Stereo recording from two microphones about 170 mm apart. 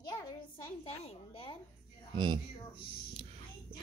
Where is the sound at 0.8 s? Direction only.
35° left (ahead or behind).